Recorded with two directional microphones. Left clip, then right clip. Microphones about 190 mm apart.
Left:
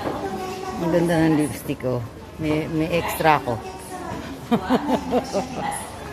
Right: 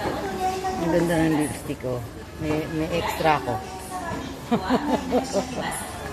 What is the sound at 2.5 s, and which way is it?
Speech, 20° left (ahead or behind).